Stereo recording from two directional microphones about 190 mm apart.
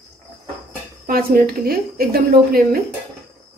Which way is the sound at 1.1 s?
50° right (ahead or behind).